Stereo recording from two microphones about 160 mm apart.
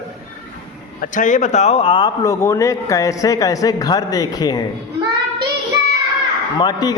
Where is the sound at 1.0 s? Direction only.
55° left (ahead or behind); by 2.1 s 35° left (ahead or behind).